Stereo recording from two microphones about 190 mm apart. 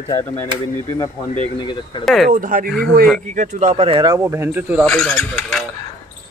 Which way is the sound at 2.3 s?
45° right (ahead or behind).